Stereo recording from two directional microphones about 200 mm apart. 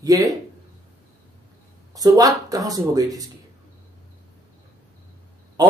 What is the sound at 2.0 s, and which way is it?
A man's voice, 20° right (ahead or behind).